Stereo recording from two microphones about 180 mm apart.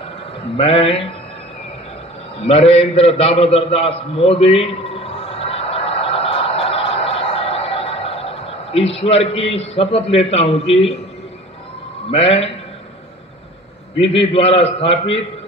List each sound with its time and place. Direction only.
0.6 s a man's voice: 35° left (ahead or behind)
2.4 s a sound: 35° left (ahead or behind)
8.9 s a man's voice: 35° left (ahead or behind)
12.1 s a man's voice: 35° left (ahead or behind)
14.3 s a man's voice: 35° left (ahead or behind)